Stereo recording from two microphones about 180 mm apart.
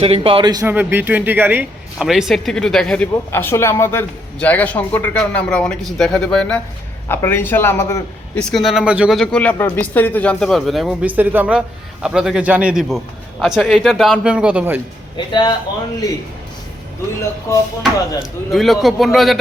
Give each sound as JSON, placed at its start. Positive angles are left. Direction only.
{"t": 0.0, "sound": "a man's voice", "side_deg": -30}
{"t": 0.7, "sound": "speech", "side_deg": -10}
{"t": 3.3, "sound": "a man's voice", "side_deg": 15}
{"t": 8.4, "sound": "speech", "side_deg": 0}
{"t": 15.1, "sound": "speech", "side_deg": 25}
{"t": 17.5, "sound": "a man's voice", "side_deg": 15}
{"t": 18.2, "sound": "speech", "side_deg": 0}